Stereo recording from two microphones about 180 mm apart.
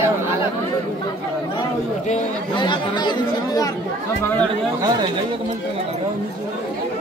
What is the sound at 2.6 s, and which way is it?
Speech, 25° left (ahead or behind).